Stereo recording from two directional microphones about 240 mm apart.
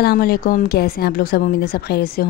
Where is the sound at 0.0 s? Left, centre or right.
Left.